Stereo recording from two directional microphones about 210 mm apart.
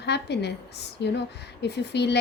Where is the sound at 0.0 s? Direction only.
50° left (ahead or behind).